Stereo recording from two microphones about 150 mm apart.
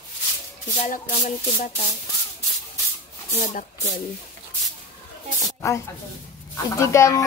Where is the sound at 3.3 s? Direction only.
55° left (ahead or behind).